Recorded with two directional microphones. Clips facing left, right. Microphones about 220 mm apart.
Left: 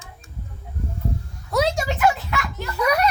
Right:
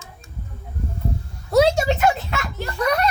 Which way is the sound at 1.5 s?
30° right (ahead or behind).